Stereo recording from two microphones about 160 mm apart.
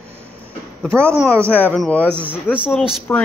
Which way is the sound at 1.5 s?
10° left (ahead or behind).